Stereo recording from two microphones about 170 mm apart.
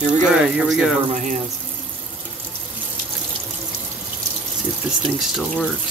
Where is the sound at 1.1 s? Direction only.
50° right (ahead or behind).